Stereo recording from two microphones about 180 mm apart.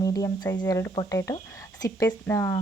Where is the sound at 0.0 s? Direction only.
20° left (ahead or behind).